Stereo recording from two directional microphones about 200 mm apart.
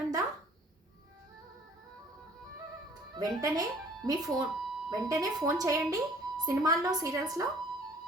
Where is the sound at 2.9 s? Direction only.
20° right (ahead or behind).